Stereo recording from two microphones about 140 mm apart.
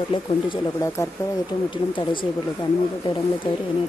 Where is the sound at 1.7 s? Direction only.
35° left (ahead or behind).